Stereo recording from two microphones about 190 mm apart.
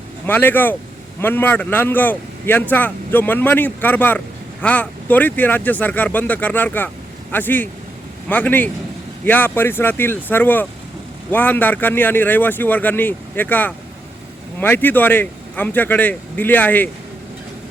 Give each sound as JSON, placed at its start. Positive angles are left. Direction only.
{"t": 0.3, "sound": "speech", "side_deg": 10}